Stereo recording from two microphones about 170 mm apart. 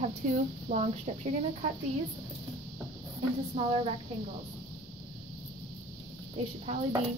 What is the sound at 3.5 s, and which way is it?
Speech, 35° right (ahead or behind).